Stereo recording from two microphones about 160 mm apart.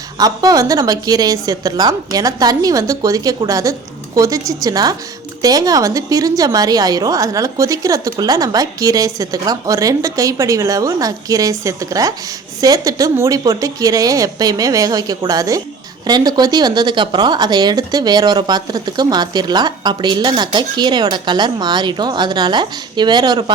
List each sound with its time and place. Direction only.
0.2 s speech: 25° right (ahead or behind)